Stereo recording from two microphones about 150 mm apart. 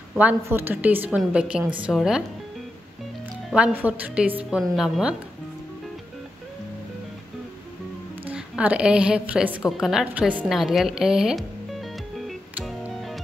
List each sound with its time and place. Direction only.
0.2 s a woman's voice: 10° right (ahead or behind)
3.4 s a woman's voice: 5° right (ahead or behind)
8.3 s a woman's voice: 10° right (ahead or behind)
12.6 s music: centre (ahead or behind)